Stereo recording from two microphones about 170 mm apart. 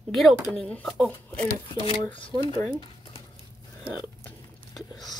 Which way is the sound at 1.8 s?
30° left (ahead or behind).